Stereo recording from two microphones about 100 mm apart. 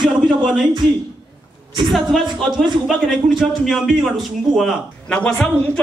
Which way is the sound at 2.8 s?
Centre (ahead or behind).